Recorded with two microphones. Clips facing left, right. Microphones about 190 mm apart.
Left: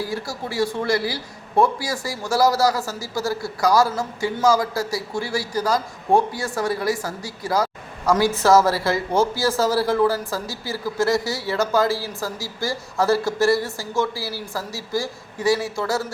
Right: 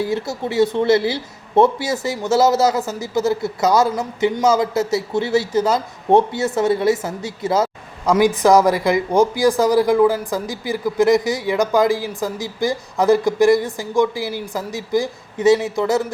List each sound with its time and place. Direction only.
0.0 s speech: 20° right (ahead or behind)